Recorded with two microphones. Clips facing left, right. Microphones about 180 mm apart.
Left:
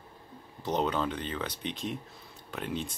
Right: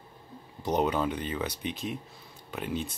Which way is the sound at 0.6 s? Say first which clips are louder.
Right 2 dB; 10° right (ahead or behind).